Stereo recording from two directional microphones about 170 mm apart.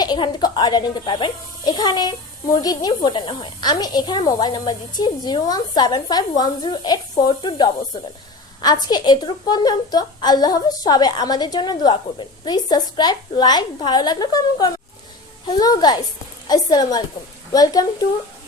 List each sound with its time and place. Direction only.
0.0 s speech: 25° left (ahead or behind)